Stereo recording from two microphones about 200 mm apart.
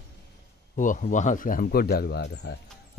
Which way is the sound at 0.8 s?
40° left (ahead or behind).